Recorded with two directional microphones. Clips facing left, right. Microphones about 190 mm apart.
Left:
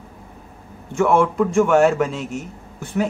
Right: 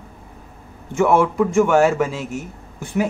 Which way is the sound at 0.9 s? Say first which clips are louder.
Right 1 dB; 5° right (ahead or behind).